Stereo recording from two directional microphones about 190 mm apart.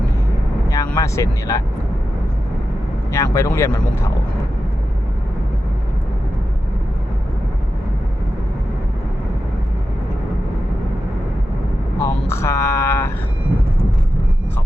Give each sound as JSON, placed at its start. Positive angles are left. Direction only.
{"t": 0.7, "sound": "speech", "side_deg": 20}
{"t": 3.1, "sound": "speech", "side_deg": 15}
{"t": 12.0, "sound": "speech", "side_deg": 15}